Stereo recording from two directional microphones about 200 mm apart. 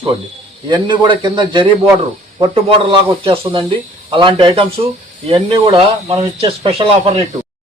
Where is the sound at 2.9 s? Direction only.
25° right (ahead or behind).